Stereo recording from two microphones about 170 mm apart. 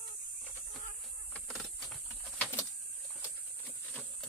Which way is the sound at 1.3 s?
Centre (ahead or behind).